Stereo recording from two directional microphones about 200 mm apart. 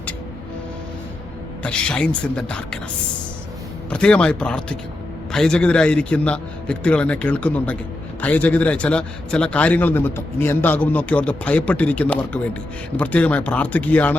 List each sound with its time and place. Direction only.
1.6 s a man's voice: 5° left (ahead or behind)
3.8 s a man's voice: 5° left (ahead or behind)